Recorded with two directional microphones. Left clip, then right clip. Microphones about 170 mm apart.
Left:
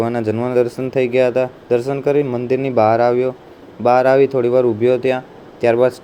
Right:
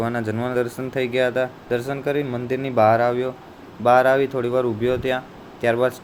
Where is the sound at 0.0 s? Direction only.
15° left (ahead or behind).